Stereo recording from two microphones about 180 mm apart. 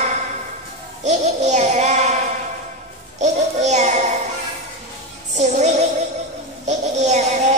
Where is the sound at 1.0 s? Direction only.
40° right (ahead or behind).